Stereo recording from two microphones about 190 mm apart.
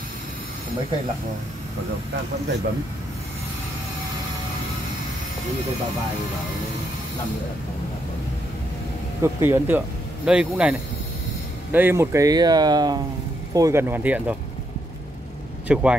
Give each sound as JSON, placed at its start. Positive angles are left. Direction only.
{"t": 9.2, "sound": "speech", "side_deg": -10}
{"t": 15.7, "sound": "speech", "side_deg": -5}